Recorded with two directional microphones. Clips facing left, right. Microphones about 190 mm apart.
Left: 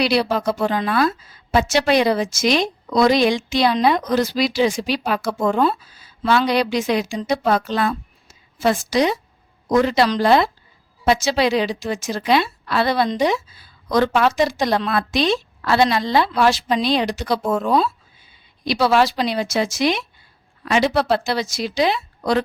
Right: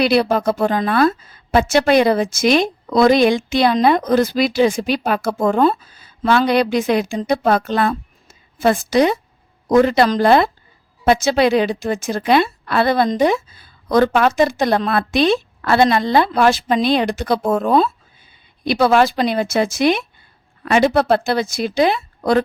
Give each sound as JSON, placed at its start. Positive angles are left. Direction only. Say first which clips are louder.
{"t": 0.0, "sound": "a woman's voice", "louder": "right 3 dB", "side_deg": -50}